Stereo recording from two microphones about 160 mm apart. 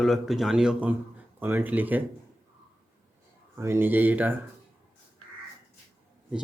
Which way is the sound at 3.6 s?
15° right (ahead or behind).